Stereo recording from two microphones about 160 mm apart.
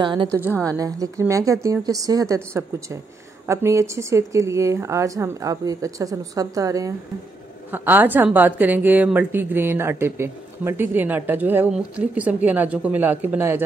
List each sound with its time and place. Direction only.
0.0 s a woman's voice: 30° right (ahead or behind); by 13.6 s 15° right (ahead or behind)